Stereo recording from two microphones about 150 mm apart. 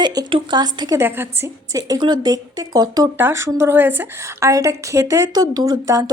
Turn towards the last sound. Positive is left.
turn(degrees=-25)  # may be behind; listen again after turning